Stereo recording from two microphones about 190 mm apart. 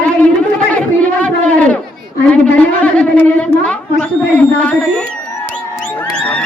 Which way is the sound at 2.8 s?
10° left (ahead or behind).